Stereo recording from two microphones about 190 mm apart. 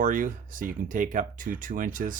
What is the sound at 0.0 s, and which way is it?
Speech, 45° right (ahead or behind).